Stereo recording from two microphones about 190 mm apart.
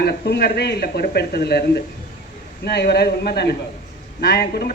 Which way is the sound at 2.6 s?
60° left (ahead or behind).